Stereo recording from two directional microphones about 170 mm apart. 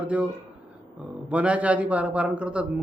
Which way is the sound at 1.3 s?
5° right (ahead or behind).